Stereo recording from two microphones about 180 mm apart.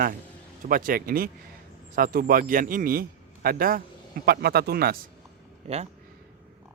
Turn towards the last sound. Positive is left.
turn(degrees=-35)  # may be behind; listen again after turning